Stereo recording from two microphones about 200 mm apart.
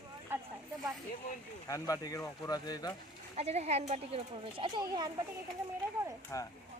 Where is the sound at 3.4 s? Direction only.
35° right (ahead or behind).